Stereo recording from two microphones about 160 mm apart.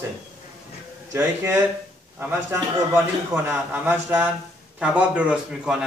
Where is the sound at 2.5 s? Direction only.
15° right (ahead or behind).